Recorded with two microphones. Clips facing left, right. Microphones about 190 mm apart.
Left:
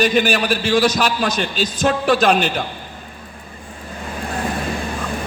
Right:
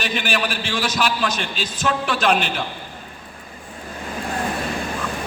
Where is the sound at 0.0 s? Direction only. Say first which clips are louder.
Left 7 dB; 40° left (ahead or behind).